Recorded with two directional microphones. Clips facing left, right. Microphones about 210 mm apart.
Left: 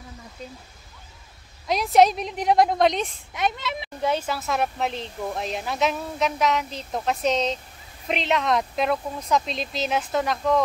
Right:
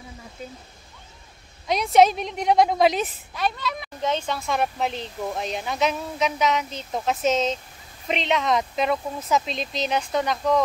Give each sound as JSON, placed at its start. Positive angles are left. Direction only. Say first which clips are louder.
{"t": 0.4, "sound": "speech", "louder": "right 1 dB", "side_deg": -5}
{"t": 1.7, "sound": "speech", "louder": "right 1 dB", "side_deg": 0}
{"t": 3.3, "sound": "speech", "louder": "even", "side_deg": 20}
{"t": 4.0, "sound": "speech", "louder": "left 1 dB", "side_deg": 10}